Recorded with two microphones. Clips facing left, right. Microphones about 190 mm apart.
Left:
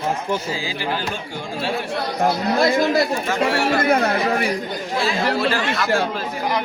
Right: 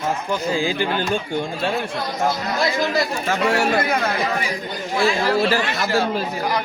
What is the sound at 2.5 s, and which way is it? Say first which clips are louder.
Speech: left 5 dB; 55° left (ahead or behind).